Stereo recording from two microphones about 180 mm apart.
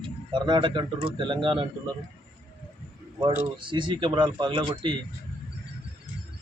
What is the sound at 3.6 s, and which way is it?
A man's voice, 25° right (ahead or behind).